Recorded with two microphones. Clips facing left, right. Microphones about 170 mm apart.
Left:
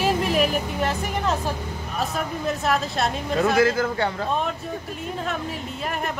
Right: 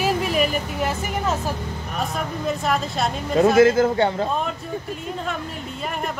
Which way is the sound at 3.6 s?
20° right (ahead or behind).